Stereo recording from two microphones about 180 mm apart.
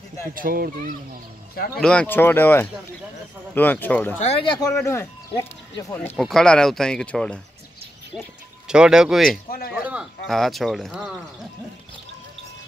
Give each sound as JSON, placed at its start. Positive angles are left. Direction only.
{"t": 0.3, "sound": "speech", "side_deg": -50}
{"t": 1.8, "sound": "speech", "side_deg": 5}
{"t": 4.2, "sound": "speech", "side_deg": 35}
{"t": 4.8, "sound": "speech", "side_deg": 15}
{"t": 5.9, "sound": "speech", "side_deg": 5}
{"t": 8.6, "sound": "speech", "side_deg": -5}